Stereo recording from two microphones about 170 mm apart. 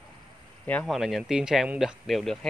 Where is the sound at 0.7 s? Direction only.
5° left (ahead or behind).